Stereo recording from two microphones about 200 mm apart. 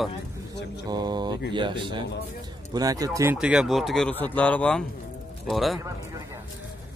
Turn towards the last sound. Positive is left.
turn(degrees=0)  # may be behind; listen again after turning